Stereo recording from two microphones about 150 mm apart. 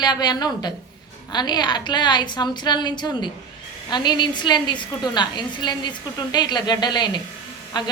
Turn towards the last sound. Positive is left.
turn(degrees=30)  # may be behind; listen again after turning